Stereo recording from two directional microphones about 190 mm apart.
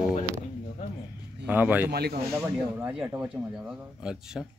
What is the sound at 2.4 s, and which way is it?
Speech, 5° right (ahead or behind).